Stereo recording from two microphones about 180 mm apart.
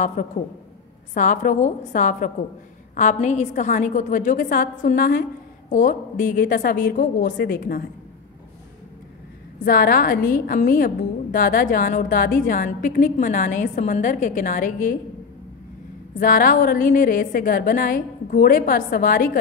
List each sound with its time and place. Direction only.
0.2 s a woman's voice: 45° left (ahead or behind)
9.7 s a woman's voice: 55° left (ahead or behind)
16.2 s a woman's voice: 50° left (ahead or behind)